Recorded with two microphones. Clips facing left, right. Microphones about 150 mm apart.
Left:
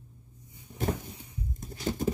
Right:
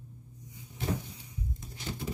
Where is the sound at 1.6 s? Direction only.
45° left (ahead or behind).